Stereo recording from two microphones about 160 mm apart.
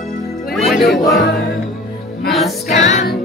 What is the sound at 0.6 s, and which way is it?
Speech, centre (ahead or behind).